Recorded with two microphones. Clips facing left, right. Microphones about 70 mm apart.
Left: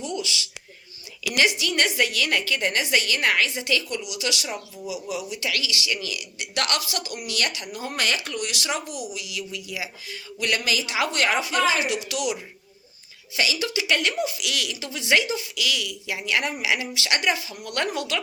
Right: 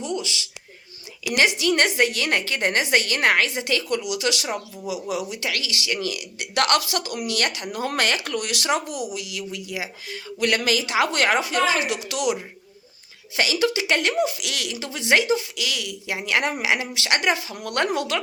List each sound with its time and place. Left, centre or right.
0.0 s a sound: right
1.3 s a woman's voice: right
5.0 s speech: right
5.4 s a woman's voice: right
17.5 s speech: right